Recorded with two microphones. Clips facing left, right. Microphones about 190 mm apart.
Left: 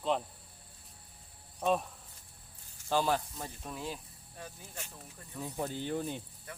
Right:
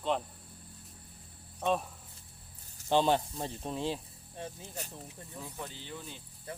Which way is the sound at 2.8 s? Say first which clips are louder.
Right 3 dB; 25° right (ahead or behind).